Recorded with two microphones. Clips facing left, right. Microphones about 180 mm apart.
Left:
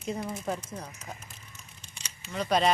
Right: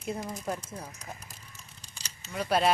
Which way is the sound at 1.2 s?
35° right (ahead or behind).